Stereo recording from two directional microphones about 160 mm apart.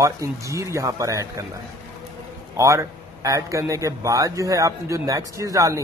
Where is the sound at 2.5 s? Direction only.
20° right (ahead or behind).